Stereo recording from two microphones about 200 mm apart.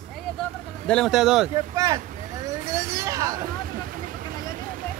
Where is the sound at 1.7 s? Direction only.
15° right (ahead or behind).